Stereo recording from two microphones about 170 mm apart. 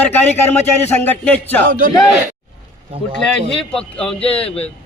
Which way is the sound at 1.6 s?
55° right (ahead or behind).